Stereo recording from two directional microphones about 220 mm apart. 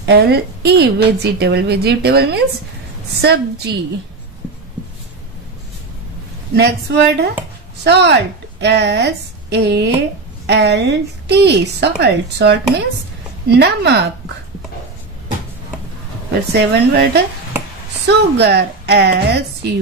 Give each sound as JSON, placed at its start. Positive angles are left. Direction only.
{"t": 0.0, "sound": "a woman's voice", "side_deg": -50}
{"t": 6.5, "sound": "a woman's voice", "side_deg": -50}
{"t": 16.5, "sound": "a woman's voice", "side_deg": -45}